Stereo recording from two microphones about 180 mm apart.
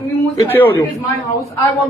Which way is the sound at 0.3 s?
10° left (ahead or behind).